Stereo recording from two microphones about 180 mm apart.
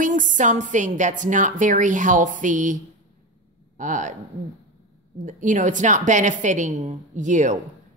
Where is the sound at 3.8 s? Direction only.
45° right (ahead or behind).